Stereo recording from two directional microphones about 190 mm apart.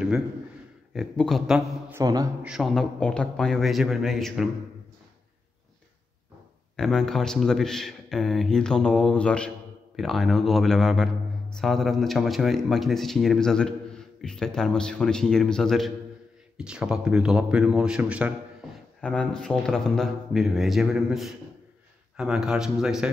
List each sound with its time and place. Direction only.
0.9 s a man's voice: centre (ahead or behind)
1.9 s speech: 15° right (ahead or behind)
2.4 s a man's voice: centre (ahead or behind)
6.8 s a man's voice: centre (ahead or behind)
18.9 s a man's voice: 5° left (ahead or behind)